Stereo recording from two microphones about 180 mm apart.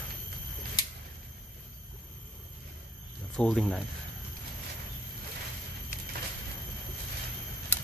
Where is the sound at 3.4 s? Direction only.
Centre (ahead or behind).